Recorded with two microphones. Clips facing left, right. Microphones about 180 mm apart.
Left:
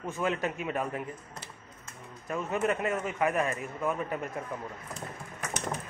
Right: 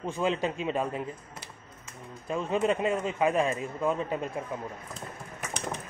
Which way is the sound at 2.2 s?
25° right (ahead or behind).